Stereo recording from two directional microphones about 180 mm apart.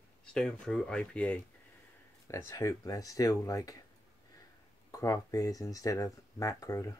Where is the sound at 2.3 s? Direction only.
15° left (ahead or behind).